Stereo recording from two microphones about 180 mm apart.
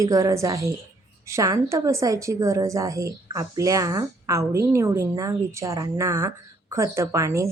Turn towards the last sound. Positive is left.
turn(degrees=-15)  # may be behind; listen again after turning